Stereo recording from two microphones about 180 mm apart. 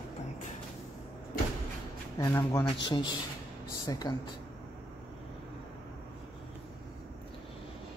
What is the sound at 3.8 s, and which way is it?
Speech, 20° left (ahead or behind).